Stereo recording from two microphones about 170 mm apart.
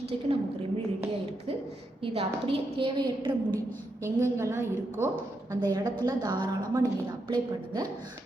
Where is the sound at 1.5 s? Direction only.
35° right (ahead or behind).